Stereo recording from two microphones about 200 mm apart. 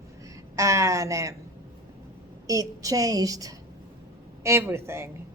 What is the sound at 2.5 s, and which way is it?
A woman's voice, 15° right (ahead or behind).